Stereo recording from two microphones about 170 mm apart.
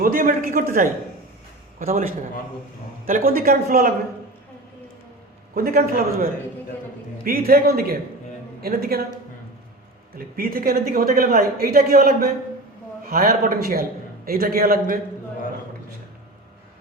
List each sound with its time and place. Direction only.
0.0 s speech: 55° right (ahead or behind)
3.1 s speech: 55° right (ahead or behind)
5.5 s speech: 60° right (ahead or behind)
7.3 s speech: 60° right (ahead or behind)
10.2 s speech: 60° right (ahead or behind)